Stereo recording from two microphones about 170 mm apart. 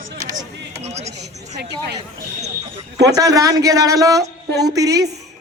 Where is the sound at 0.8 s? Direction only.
40° right (ahead or behind).